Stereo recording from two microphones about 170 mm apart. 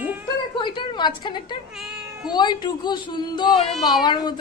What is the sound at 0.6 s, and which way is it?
A child's voice, 25° left (ahead or behind).